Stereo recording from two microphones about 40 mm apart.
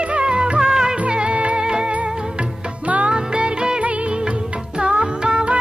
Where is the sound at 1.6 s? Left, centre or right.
Centre.